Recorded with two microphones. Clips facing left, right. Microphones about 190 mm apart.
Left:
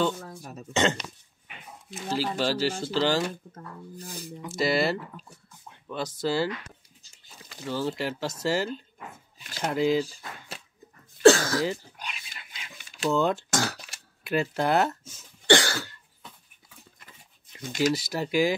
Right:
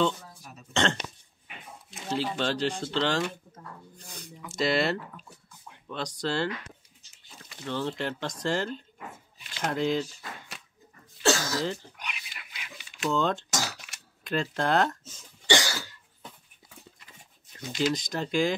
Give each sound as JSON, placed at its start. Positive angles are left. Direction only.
{"t": 0.2, "sound": "burping", "side_deg": 55}
{"t": 0.7, "sound": "speech", "side_deg": 5}
{"t": 4.5, "sound": "speech", "side_deg": 5}
{"t": 7.6, "sound": "speech", "side_deg": 5}
{"t": 11.1, "sound": "a sound", "side_deg": 55}
{"t": 12.0, "sound": "a sound", "side_deg": 30}
{"t": 13.1, "sound": "speech", "side_deg": 10}
{"t": 13.5, "sound": "speech", "side_deg": 60}
{"t": 13.7, "sound": "cutlery", "side_deg": 30}
{"t": 14.2, "sound": "speech", "side_deg": 10}
{"t": 15.4, "sound": "cough", "side_deg": 55}
{"t": 17.6, "sound": "speech", "side_deg": 50}
{"t": 17.9, "sound": "speech", "side_deg": 10}